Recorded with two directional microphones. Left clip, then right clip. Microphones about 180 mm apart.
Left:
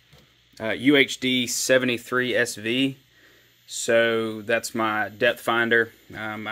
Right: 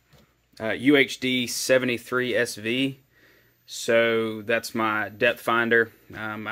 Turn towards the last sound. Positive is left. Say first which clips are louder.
# left 1 dB
turn(degrees=10)  # may be behind; listen again after turning